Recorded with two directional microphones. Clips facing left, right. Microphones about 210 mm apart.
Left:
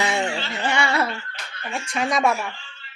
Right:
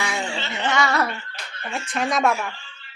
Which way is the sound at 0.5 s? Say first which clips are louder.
Even; 10° left (ahead or behind).